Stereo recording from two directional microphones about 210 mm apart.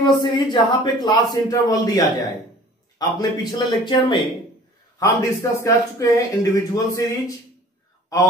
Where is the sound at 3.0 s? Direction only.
20° left (ahead or behind).